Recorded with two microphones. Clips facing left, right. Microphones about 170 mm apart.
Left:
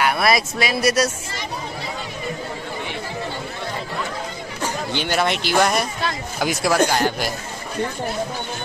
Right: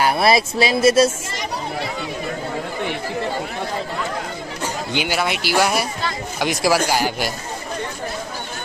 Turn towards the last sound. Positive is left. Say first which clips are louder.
# left 1 dB
turn(degrees=-5)  # may be behind; listen again after turning